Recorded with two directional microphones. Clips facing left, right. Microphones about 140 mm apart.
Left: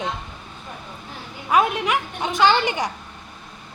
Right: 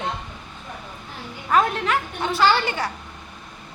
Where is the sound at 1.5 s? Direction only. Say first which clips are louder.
Left 1 dB; 10° left (ahead or behind).